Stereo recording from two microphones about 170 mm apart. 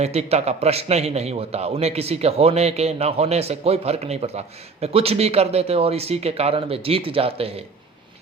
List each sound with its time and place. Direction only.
0.0 s a man's voice: 40° right (ahead or behind)